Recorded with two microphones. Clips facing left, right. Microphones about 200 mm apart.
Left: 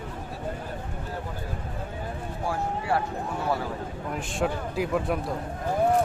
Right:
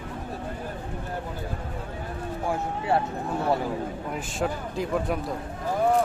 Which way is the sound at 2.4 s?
25° right (ahead or behind).